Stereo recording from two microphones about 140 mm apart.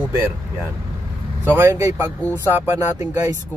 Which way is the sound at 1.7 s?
25° right (ahead or behind).